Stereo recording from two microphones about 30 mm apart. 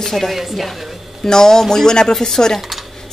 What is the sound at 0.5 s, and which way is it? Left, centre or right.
Speech, centre.